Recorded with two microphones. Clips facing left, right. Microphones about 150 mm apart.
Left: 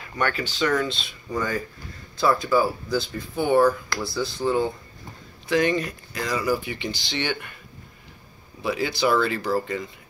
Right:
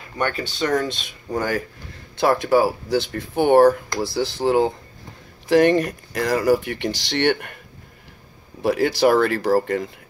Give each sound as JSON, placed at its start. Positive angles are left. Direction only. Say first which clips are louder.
{"t": 0.3, "sound": "speech", "louder": "right 2 dB", "side_deg": -40}
{"t": 1.3, "sound": "speech", "louder": "right 3 dB", "side_deg": -70}
{"t": 5.5, "sound": "speech", "louder": "right 7 dB", "side_deg": -60}
{"t": 8.6, "sound": "speech", "louder": "right 6 dB", "side_deg": -60}